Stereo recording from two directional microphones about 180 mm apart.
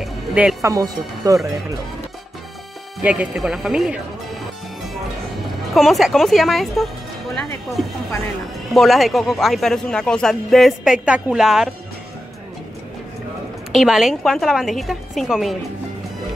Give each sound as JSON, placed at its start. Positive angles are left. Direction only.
{"t": 0.0, "sound": "music", "side_deg": -5}
{"t": 0.6, "sound": "speech", "side_deg": -20}
{"t": 3.0, "sound": "speech", "side_deg": -5}
{"t": 5.8, "sound": "speech", "side_deg": 0}
{"t": 13.7, "sound": "speech", "side_deg": 0}